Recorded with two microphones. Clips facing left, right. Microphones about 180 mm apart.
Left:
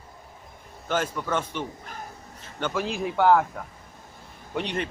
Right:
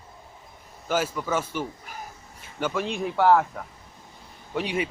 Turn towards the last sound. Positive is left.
turn(degrees=-5)  # may be behind; listen again after turning